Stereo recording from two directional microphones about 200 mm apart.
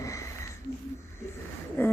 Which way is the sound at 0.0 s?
15° left (ahead or behind).